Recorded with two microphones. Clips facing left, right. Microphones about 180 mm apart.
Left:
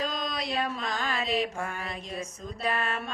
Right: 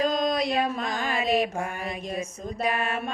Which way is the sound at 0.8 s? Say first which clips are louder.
Right 3 dB; 50° right (ahead or behind).